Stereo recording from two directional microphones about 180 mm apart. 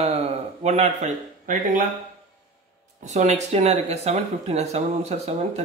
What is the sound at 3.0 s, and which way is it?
Speech, 40° right (ahead or behind).